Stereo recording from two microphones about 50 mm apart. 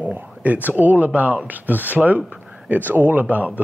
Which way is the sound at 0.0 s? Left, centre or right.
Right.